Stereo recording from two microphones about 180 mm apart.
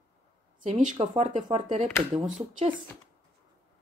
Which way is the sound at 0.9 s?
40° right (ahead or behind).